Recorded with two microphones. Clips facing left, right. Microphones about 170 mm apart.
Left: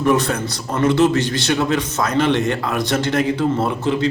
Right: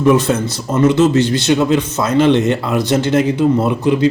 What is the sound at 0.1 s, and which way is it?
Speech, 20° right (ahead or behind).